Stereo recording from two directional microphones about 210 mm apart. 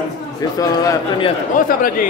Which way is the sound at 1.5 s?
40° left (ahead or behind).